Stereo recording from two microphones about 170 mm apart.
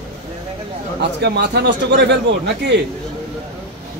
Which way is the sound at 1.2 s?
85° right.